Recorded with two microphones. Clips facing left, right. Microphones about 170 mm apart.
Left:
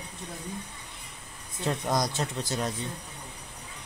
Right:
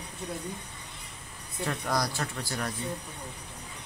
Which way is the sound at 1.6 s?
20° left (ahead or behind).